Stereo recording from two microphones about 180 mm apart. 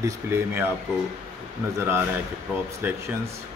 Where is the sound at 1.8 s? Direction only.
15° right (ahead or behind).